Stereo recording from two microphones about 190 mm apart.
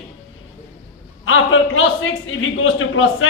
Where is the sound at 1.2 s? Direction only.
90° left.